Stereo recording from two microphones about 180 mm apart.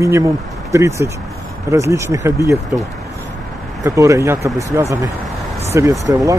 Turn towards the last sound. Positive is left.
turn(degrees=-20)  # may be behind; listen again after turning